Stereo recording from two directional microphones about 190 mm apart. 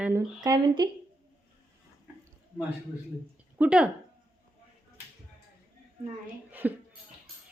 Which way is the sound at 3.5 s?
5° right (ahead or behind).